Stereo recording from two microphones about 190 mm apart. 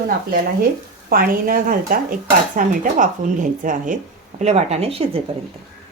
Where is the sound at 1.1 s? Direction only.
50° right (ahead or behind); by 5.2 s 30° right (ahead or behind).